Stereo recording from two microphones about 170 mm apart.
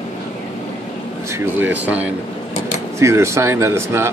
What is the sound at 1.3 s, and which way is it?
Speech, 10° right (ahead or behind).